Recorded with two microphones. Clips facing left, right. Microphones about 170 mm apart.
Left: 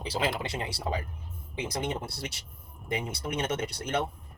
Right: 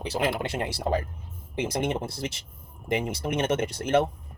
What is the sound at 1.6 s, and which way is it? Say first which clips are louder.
Speech: right 5 dB; 90° right.